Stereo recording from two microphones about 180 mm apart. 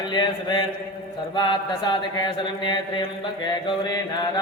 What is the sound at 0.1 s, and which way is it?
Mantra, 25° left (ahead or behind).